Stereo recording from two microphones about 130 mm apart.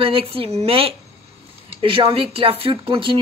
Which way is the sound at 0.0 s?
45° right (ahead or behind).